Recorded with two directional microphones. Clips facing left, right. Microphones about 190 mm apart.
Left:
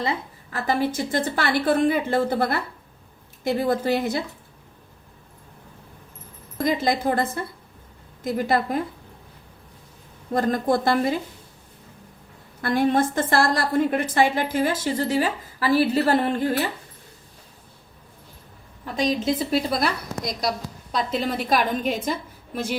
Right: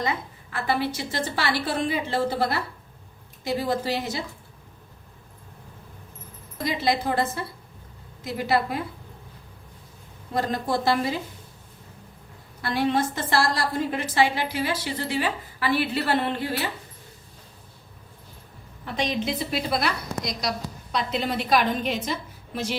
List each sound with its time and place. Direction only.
0.0 s a woman's voice: 35° left (ahead or behind); by 4.2 s 55° left (ahead or behind)
6.6 s a woman's voice: 50° left (ahead or behind)
10.3 s a woman's voice: 50° left (ahead or behind)
12.6 s a woman's voice: 50° left (ahead or behind)
18.9 s a woman's voice: 40° left (ahead or behind)